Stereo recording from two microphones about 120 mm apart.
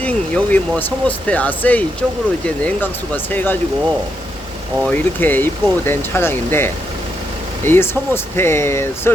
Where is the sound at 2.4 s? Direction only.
10° left (ahead or behind).